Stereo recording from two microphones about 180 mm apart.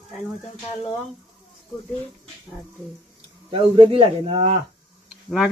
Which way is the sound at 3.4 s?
30° right (ahead or behind).